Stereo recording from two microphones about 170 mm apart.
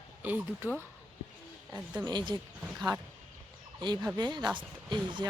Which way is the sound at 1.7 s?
Centre (ahead or behind).